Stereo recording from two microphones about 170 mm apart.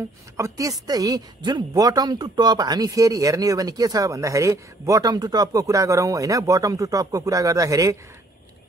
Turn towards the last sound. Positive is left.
turn(degrees=-20)  # may be behind; listen again after turning